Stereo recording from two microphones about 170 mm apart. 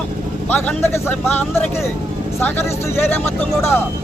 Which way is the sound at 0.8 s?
15° left (ahead or behind).